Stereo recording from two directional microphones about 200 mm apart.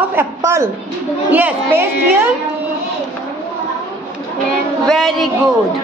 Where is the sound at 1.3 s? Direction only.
10° right (ahead or behind).